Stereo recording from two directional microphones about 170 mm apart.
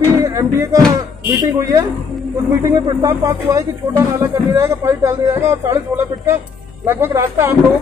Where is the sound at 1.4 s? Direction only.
20° right (ahead or behind).